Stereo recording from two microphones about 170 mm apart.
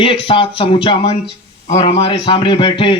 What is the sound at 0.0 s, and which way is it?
A man's voice, 30° left (ahead or behind).